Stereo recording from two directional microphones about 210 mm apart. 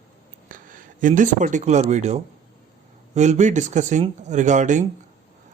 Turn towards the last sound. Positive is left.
turn(degrees=-35)  # may be behind; listen again after turning